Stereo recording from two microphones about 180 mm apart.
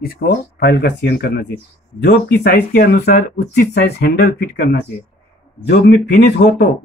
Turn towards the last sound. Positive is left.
turn(degrees=65)  # may be behind; listen again after turning